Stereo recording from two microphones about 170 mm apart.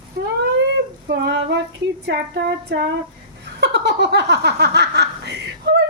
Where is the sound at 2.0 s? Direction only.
75° right (ahead or behind).